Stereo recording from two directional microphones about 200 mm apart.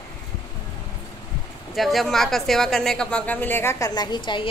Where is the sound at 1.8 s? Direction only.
Centre (ahead or behind).